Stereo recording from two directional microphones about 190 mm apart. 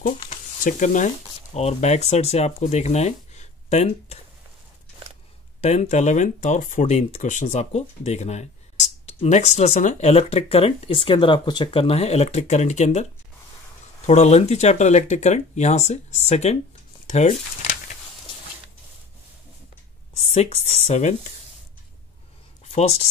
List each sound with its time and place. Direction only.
0.0 s speech: 40° left (ahead or behind)
5.6 s speech: 35° left (ahead or behind)
14.0 s speech: 35° left (ahead or behind)
20.2 s speech: 35° left (ahead or behind)
22.7 s speech: 35° left (ahead or behind)